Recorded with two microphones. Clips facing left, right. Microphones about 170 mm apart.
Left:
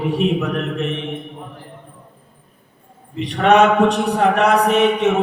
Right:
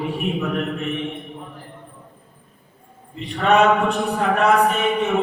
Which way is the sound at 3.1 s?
75° left (ahead or behind).